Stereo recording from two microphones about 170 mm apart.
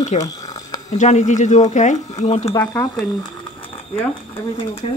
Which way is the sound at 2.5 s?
15° left (ahead or behind).